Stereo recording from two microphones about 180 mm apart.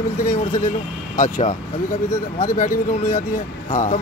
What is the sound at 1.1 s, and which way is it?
A man's voice, 45° left (ahead or behind).